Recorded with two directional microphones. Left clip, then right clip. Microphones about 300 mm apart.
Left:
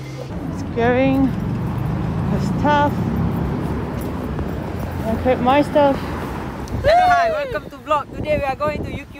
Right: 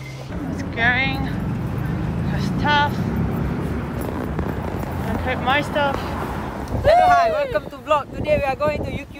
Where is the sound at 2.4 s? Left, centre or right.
Left.